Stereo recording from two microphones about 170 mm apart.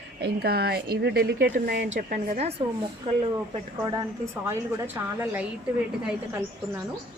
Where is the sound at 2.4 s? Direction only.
35° right (ahead or behind).